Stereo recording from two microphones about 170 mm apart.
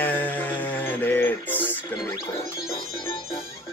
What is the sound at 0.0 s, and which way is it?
Music, 10° left (ahead or behind).